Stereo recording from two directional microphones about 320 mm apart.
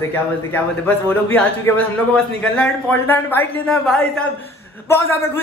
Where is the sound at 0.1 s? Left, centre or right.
Centre.